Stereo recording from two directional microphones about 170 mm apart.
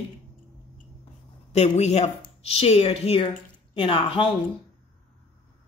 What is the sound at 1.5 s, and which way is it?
Speech, 40° left (ahead or behind).